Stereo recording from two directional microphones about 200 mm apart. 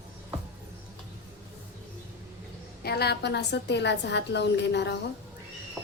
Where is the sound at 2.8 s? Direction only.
55° left (ahead or behind).